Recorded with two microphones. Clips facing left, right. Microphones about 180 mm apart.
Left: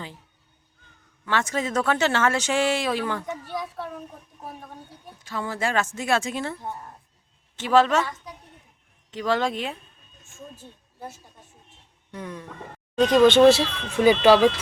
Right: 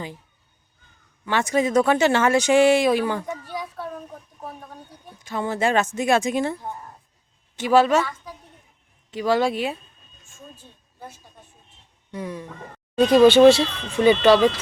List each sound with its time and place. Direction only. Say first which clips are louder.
1.2 s speech: right 5 dB; 15° right (ahead or behind)
3.5 s a child's voice: even; centre (ahead or behind)
5.2 s speech: right 5 dB; 20° right (ahead or behind)
9.0 s speech: right 4 dB; 10° right (ahead or behind)
12.1 s speech: right 4 dB; 10° right (ahead or behind)
13.5 s speech: right 2 dB; 5° left (ahead or behind)